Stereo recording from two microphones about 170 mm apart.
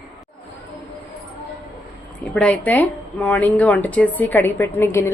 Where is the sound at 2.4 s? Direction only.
10° left (ahead or behind).